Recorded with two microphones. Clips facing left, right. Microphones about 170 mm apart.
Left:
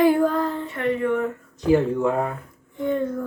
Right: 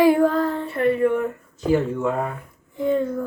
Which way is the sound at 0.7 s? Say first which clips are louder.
Right 5 dB; 30° right (ahead or behind).